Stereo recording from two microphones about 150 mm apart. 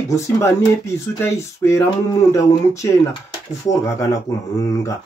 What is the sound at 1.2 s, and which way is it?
Speech, 15° left (ahead or behind).